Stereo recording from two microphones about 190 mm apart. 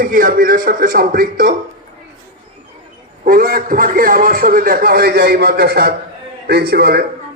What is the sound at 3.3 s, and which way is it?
A man's voice, 50° right (ahead or behind).